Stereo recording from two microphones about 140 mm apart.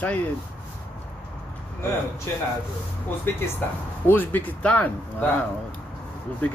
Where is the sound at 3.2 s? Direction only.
15° left (ahead or behind).